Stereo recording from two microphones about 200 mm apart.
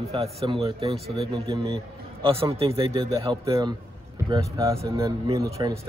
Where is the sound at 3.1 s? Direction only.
15° right (ahead or behind).